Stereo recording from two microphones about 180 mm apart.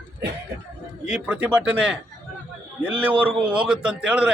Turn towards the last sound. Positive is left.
turn(degrees=-5)  # may be behind; listen again after turning